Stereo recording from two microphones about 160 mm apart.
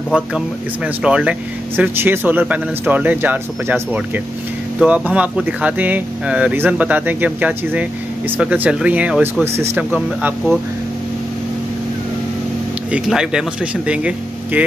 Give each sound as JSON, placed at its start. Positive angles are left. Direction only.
{"t": 0.1, "sound": "speech", "side_deg": -5}
{"t": 12.9, "sound": "speech", "side_deg": -5}